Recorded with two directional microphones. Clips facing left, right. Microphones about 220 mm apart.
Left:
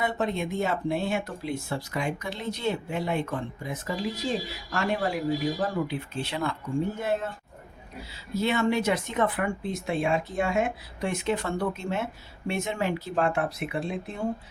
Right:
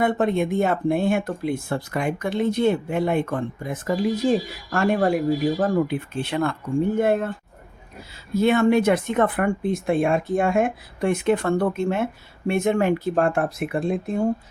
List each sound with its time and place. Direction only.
0.0 s speech: 55° right (ahead or behind)